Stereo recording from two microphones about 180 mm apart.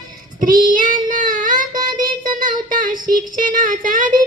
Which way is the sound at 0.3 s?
50° right (ahead or behind).